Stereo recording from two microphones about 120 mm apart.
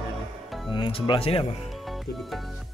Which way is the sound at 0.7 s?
45° left (ahead or behind).